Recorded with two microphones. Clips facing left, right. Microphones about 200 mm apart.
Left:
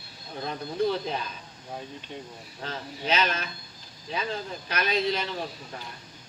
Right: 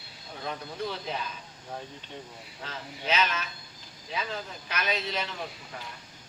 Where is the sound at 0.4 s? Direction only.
35° left (ahead or behind).